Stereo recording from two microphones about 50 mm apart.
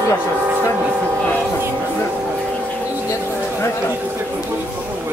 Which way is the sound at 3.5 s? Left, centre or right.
Left.